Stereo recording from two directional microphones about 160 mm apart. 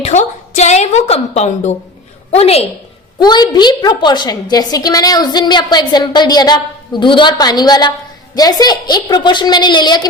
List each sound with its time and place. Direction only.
0.0 s a woman's voice: 45° left (ahead or behind)
3.2 s a woman's voice: 25° left (ahead or behind)